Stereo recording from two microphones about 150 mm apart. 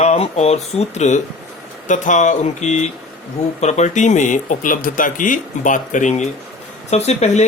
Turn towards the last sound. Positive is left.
turn(degrees=45)  # may be behind; listen again after turning